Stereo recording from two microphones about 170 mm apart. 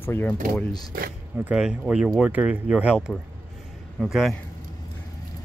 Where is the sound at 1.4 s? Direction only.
5° right (ahead or behind).